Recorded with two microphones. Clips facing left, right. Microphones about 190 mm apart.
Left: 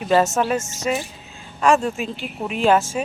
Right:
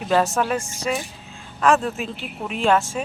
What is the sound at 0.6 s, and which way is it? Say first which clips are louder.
Speech: even; 20° left (ahead or behind).